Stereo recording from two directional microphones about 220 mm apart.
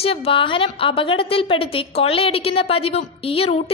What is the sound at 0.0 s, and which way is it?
A woman's voice, 25° left (ahead or behind).